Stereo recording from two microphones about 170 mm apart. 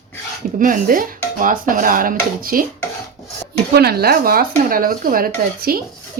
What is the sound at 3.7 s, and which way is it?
A woman's voice, 65° right (ahead or behind).